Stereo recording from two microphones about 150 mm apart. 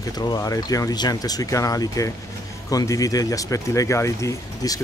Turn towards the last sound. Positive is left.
turn(degrees=20)  # may be behind; listen again after turning